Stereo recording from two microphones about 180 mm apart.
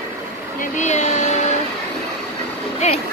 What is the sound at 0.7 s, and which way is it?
Speech, 40° left (ahead or behind).